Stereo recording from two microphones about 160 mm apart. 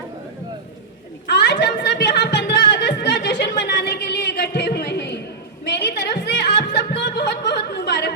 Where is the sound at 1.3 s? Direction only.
90° left.